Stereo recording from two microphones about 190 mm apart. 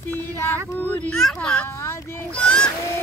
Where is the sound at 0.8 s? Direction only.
5° left (ahead or behind).